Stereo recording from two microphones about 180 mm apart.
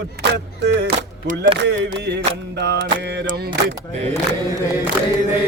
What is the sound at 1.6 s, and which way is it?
Music, 75° right (ahead or behind).